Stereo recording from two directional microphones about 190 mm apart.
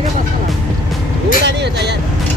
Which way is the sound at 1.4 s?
65° right (ahead or behind).